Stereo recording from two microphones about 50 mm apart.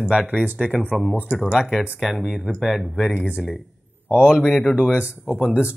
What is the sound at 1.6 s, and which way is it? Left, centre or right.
Speech, centre.